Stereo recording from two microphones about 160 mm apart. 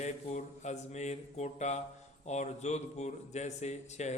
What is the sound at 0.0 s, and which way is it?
A man's voice, 45° left (ahead or behind).